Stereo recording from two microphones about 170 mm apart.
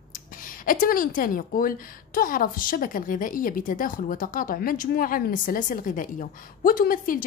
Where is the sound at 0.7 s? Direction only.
55° left (ahead or behind).